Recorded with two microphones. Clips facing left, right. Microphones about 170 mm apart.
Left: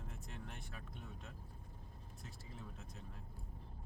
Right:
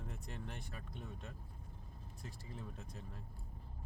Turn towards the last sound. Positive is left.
turn(degrees=0)  # may be behind; listen again after turning